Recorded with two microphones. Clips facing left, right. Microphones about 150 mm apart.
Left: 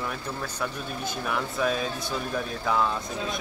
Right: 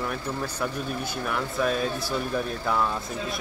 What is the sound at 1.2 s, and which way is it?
Speech, centre (ahead or behind).